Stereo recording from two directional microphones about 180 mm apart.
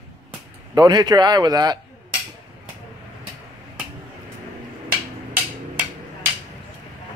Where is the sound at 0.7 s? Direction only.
25° right (ahead or behind).